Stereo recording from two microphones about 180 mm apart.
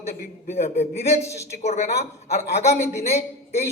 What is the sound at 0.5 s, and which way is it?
A man's voice, 35° left (ahead or behind).